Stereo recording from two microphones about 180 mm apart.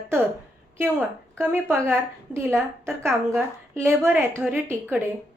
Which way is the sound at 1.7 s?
10° right (ahead or behind).